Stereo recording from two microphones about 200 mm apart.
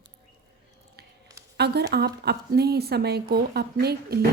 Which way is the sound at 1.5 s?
55° right (ahead or behind).